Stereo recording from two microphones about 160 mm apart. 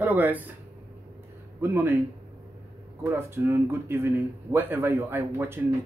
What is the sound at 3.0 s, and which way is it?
Speech, 15° right (ahead or behind).